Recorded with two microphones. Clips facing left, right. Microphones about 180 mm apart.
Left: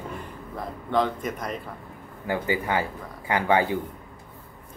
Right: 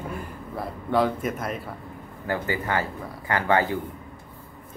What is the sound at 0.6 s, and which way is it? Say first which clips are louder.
A man's voice: right 2 dB; 5° right (ahead or behind).